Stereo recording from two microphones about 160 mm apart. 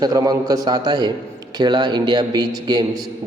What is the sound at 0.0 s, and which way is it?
A man's voice, 20° right (ahead or behind).